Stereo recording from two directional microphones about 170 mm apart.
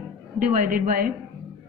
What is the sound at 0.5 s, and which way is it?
Speech, 50° right (ahead or behind).